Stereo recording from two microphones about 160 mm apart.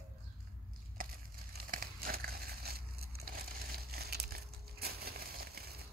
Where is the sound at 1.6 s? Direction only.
65° right (ahead or behind).